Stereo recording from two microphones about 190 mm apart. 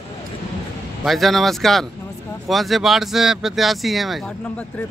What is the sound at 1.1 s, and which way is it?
Speech, centre (ahead or behind).